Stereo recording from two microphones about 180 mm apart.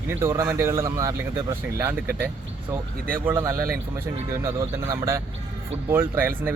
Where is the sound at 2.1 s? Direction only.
60° right (ahead or behind).